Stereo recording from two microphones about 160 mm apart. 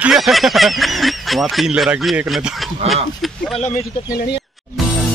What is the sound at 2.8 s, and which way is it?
Speech, 40° right (ahead or behind).